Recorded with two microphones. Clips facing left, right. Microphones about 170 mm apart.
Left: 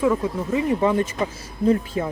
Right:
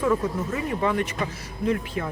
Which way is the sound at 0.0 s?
10° left (ahead or behind).